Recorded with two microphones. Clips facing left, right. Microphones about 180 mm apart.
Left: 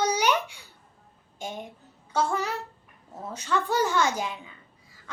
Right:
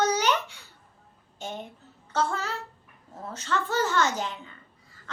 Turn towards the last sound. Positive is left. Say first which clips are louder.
# left 1 dB
turn(degrees=10)  # may be behind; listen again after turning